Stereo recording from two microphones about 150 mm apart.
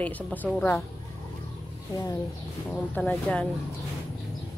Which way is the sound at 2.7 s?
10° left (ahead or behind).